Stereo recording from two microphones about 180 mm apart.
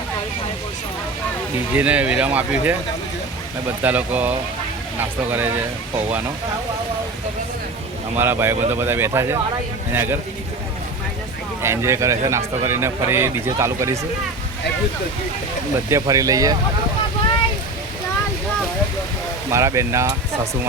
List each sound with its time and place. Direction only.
1.7 s speech: 10° right (ahead or behind)
3.8 s speech: 10° right (ahead or behind)
8.2 s speech: 10° right (ahead or behind)
11.6 s speech: 15° right (ahead or behind)
15.9 s speech: 20° right (ahead or behind)
19.5 s speech: 15° right (ahead or behind)